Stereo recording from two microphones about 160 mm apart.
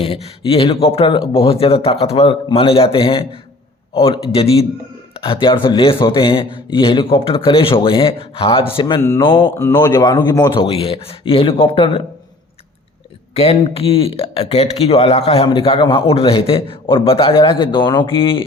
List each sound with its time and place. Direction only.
0.0 s speech: 35° left (ahead or behind)
9.6 s speech: 20° left (ahead or behind); by 12.0 s 35° left (ahead or behind)
13.3 s speech: 40° left (ahead or behind)